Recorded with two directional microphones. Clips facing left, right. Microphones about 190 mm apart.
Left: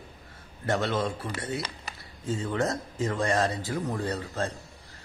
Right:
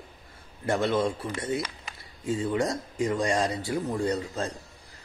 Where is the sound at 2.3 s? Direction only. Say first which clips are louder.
Right 2 dB; 10° right (ahead or behind).